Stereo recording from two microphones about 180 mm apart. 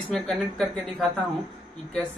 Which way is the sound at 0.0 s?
5° left (ahead or behind).